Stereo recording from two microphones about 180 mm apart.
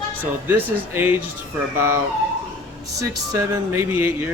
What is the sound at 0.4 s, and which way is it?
Speech, 10° right (ahead or behind).